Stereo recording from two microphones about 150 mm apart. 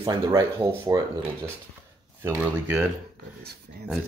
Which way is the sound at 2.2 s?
15° right (ahead or behind).